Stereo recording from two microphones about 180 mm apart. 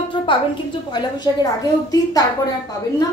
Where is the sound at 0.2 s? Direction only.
30° left (ahead or behind).